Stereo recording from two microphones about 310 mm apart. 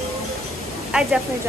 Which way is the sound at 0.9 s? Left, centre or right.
Centre.